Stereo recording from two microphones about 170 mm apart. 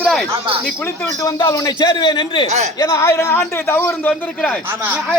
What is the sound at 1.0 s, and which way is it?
A man's voice, 25° left (ahead or behind).